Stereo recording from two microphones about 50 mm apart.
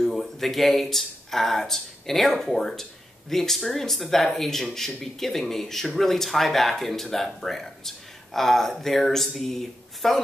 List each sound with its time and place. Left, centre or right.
0.0 s speech: centre